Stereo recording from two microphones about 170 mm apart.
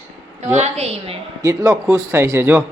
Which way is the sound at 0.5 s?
40° right (ahead or behind).